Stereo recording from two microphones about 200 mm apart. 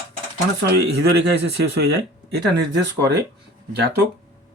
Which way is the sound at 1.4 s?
55° right (ahead or behind).